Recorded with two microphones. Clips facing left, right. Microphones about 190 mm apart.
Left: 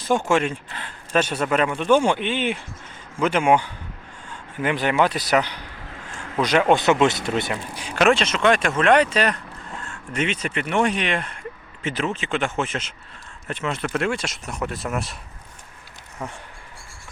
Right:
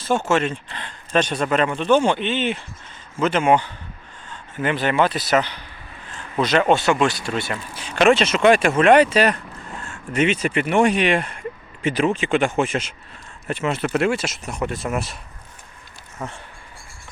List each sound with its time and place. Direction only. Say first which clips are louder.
0.3 s speech: even; 10° left (ahead or behind)
5.8 s a sound: left 3 dB; 80° left
6.4 s speech: even; 10° left (ahead or behind)
16.2 s speech: right 1 dB; 10° left (ahead or behind)